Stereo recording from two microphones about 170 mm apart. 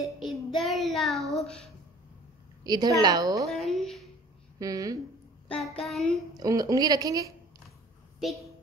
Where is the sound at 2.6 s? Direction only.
25° right (ahead or behind).